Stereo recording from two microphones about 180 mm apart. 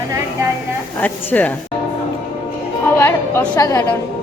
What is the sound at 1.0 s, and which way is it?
Speech, 10° left (ahead or behind).